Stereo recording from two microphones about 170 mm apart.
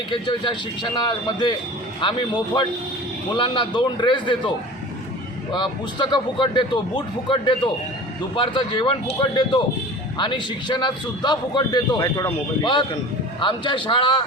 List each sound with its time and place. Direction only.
0.1 s a man's voice: 30° left (ahead or behind)
13.4 s a man's voice: 30° left (ahead or behind)